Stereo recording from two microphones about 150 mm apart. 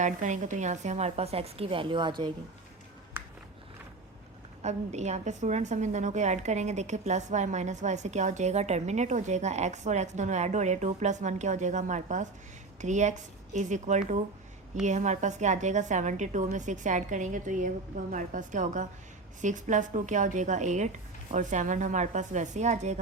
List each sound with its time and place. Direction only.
0.0 s a woman's voice: 55° right (ahead or behind); by 2.3 s 30° right (ahead or behind)
4.6 s a woman's voice: 50° right (ahead or behind)